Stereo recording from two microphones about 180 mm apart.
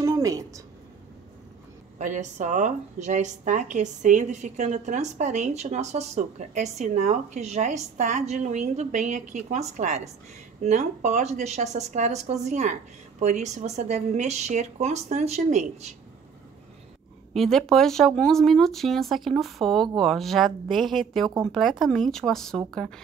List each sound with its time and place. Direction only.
0.0 s a sound: 15° right (ahead or behind)
2.0 s a woman's voice: 40° right (ahead or behind)
17.3 s speech: centre (ahead or behind)